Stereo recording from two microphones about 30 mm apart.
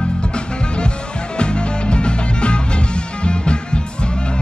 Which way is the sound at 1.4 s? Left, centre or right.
Left.